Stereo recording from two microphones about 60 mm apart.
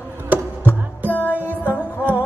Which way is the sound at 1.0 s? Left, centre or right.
Right.